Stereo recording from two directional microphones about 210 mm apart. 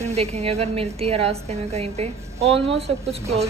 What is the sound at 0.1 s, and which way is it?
A woman's voice, 30° right (ahead or behind).